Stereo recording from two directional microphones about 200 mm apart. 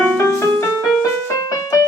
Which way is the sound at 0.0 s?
10° left (ahead or behind).